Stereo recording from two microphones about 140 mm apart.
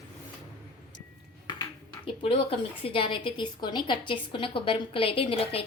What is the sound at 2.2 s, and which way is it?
A woman's voice, 40° left (ahead or behind).